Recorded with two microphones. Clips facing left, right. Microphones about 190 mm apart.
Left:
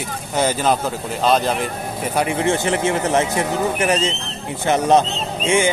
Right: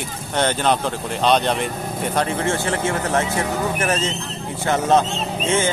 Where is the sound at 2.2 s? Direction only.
15° left (ahead or behind).